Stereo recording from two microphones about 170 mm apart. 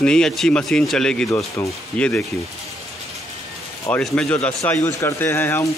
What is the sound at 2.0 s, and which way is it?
Speech, 5° left (ahead or behind).